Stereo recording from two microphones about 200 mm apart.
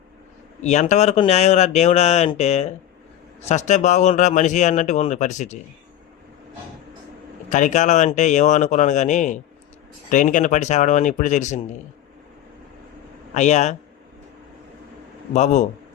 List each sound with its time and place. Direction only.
0.6 s speech: 35° left (ahead or behind)
7.5 s speech: 40° left (ahead or behind)
13.3 s speech: 35° left (ahead or behind)
15.3 s speech: 35° left (ahead or behind)